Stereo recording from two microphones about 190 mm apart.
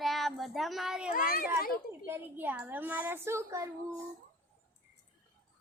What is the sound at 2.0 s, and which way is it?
A woman's voice, 10° right (ahead or behind).